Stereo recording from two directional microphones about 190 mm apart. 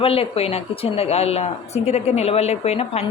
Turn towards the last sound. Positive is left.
turn(degrees=35)  # may be behind; listen again after turning